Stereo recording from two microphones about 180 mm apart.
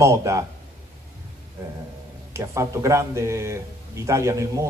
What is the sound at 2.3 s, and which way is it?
Speech, 15° right (ahead or behind).